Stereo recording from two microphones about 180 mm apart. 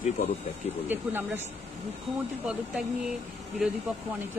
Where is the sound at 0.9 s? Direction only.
10° right (ahead or behind).